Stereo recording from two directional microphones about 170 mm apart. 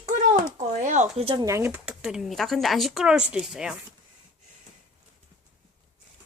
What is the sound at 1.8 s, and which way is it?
Speech, 5° right (ahead or behind).